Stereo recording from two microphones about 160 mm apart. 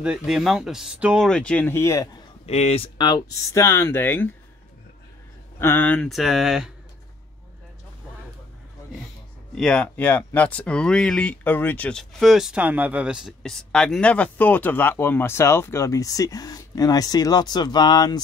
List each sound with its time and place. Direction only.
0.0 s speech: 5° right (ahead or behind); by 2.0 s 15° left (ahead or behind)
2.4 s speech: 40° left (ahead or behind); by 4.3 s 10° left (ahead or behind)
5.6 s speech: 15° left (ahead or behind); by 6.7 s 5° right (ahead or behind)
9.6 s speech: 5° left (ahead or behind); by 18.2 s 25° left (ahead or behind)